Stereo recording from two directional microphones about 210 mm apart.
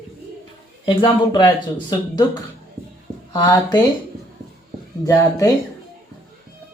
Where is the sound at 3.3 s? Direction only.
20° left (ahead or behind).